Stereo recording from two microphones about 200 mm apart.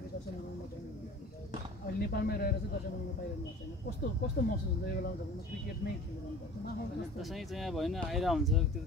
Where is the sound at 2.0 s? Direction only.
50° left (ahead or behind).